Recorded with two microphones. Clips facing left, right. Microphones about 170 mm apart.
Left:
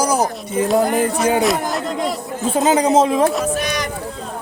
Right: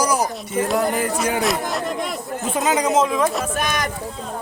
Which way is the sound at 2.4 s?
30° left (ahead or behind).